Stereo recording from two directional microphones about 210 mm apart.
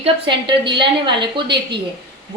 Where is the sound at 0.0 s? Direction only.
25° right (ahead or behind).